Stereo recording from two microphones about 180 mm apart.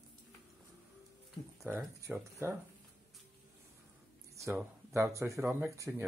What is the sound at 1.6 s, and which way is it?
Speech, 15° right (ahead or behind).